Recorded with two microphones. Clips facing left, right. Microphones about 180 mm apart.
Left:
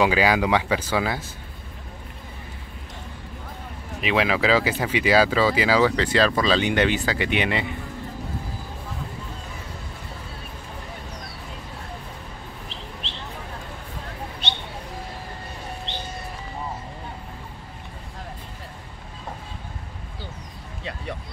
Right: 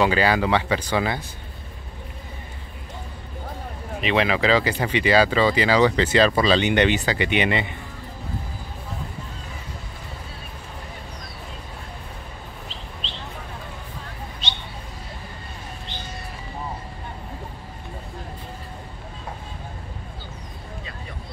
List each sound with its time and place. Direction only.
0.0 s speech: 10° left (ahead or behind)
4.0 s speech: 5° left (ahead or behind)
14.4 s a sound: 60° left (ahead or behind)